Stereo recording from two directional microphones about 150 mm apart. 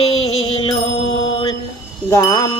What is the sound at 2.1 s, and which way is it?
Speech, 20° left (ahead or behind).